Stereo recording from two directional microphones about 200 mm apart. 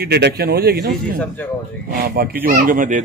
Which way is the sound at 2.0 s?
50° right (ahead or behind).